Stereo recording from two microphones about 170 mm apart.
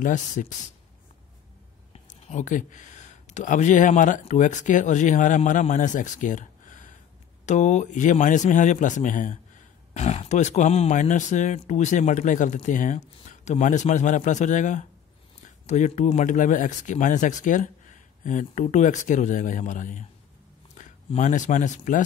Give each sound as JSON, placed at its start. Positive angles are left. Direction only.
{"t": 0.0, "sound": "speech", "side_deg": 50}
{"t": 2.0, "sound": "speech", "side_deg": 45}
{"t": 9.9, "sound": "speech", "side_deg": 40}